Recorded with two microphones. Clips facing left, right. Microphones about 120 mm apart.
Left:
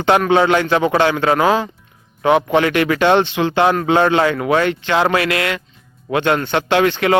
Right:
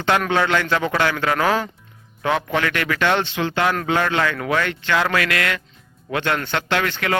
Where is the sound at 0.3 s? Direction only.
20° left (ahead or behind).